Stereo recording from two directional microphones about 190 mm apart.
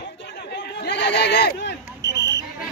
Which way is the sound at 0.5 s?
60° left (ahead or behind).